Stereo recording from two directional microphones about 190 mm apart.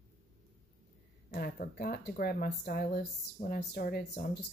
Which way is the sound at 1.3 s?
50° left (ahead or behind).